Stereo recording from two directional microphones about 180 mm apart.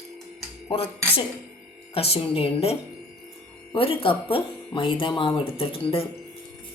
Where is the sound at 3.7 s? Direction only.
30° left (ahead or behind).